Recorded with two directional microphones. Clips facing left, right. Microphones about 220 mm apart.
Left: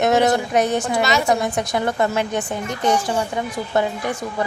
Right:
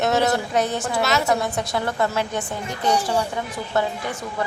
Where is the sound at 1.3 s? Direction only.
15° left (ahead or behind).